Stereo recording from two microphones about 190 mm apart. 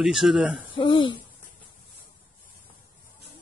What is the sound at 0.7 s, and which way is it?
Speech, 25° left (ahead or behind).